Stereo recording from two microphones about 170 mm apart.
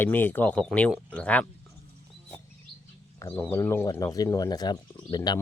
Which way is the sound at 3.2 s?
15° left (ahead or behind).